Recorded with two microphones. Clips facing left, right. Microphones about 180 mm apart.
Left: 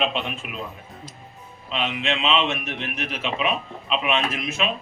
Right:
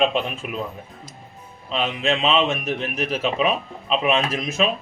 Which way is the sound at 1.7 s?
40° right (ahead or behind).